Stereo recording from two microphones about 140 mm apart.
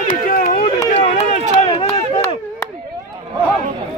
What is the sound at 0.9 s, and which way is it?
Run, 55° left (ahead or behind).